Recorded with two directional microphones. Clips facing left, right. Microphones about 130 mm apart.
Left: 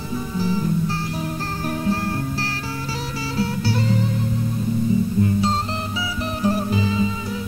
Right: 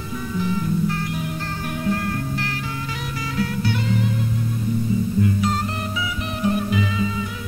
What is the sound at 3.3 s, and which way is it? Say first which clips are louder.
Music: left 1 dB; 35° left (ahead or behind).